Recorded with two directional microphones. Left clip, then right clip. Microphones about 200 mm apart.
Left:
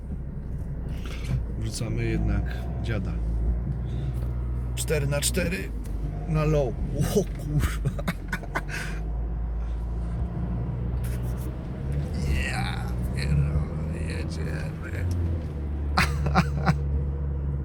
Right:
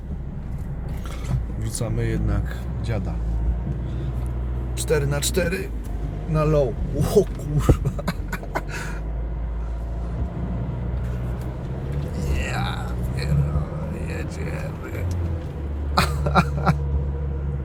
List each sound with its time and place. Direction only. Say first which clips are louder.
1.8 s speech: right 3 dB; 25° right (ahead or behind)
4.9 s speech: right 4 dB; 10° right (ahead or behind)
7.9 s a sound: right 2 dB; 5° right (ahead or behind)
12.1 s a sound: right 2 dB; 5° right (ahead or behind)
14.1 s music: right 3 dB; 10° right (ahead or behind)
16.0 s throat clearing: right 4 dB; 5° right (ahead or behind)